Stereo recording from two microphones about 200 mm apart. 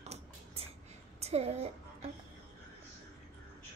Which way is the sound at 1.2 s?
30° right (ahead or behind).